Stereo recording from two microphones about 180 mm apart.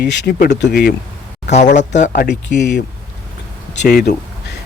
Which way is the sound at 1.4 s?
40° left (ahead or behind).